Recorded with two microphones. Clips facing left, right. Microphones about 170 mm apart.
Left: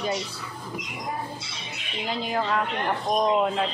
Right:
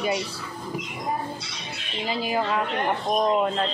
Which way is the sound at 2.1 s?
5° right (ahead or behind).